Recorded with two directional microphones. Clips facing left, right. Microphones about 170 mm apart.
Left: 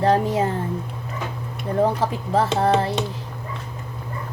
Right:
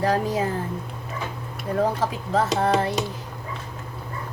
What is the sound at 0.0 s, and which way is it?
Speech, 25° left (ahead or behind).